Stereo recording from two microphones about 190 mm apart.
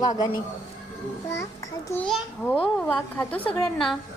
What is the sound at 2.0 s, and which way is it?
A child's voice, centre (ahead or behind).